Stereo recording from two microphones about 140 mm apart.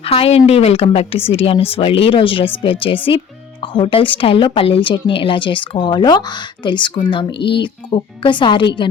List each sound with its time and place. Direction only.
0.0 s a woman's voice: 45° left (ahead or behind)